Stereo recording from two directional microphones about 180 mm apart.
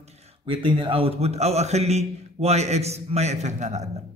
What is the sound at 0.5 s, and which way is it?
A man's voice, 30° right (ahead or behind).